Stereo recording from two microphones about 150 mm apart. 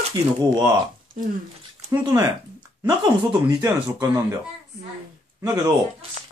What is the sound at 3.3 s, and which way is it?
Speech, 20° right (ahead or behind).